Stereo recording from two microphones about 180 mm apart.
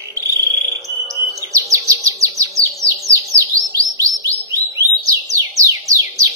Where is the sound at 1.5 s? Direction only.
15° right (ahead or behind).